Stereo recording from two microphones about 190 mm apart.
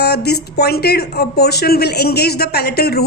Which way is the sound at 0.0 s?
60° left (ahead or behind).